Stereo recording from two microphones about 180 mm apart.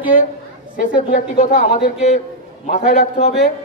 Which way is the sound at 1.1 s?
45° left (ahead or behind).